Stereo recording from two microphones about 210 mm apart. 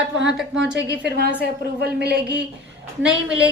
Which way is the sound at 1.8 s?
50° right (ahead or behind).